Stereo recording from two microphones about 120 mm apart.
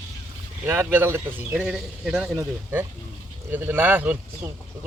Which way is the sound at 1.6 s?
5° right (ahead or behind).